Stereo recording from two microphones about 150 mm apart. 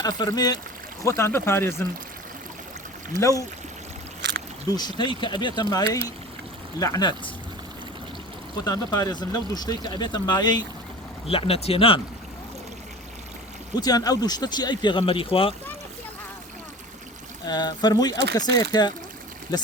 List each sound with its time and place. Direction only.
0.0 s speech: 25° left (ahead or behind)
3.2 s speech: 20° left (ahead or behind)
4.7 s speech: 30° left (ahead or behind)
8.6 s speech: 25° left (ahead or behind)
11.3 s speech: 40° left (ahead or behind)
13.7 s speech: 25° left (ahead or behind)
17.4 s speech: 25° left (ahead or behind)